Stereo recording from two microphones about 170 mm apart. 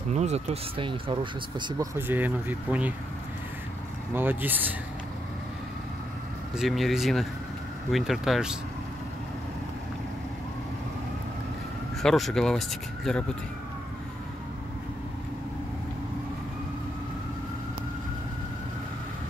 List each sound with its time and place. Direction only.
0.1 s speech: 40° right (ahead or behind)
2.0 s speech: 10° right (ahead or behind)
4.1 s speech: 10° right (ahead or behind)
6.5 s speech: centre (ahead or behind)
12.0 s speech: centre (ahead or behind)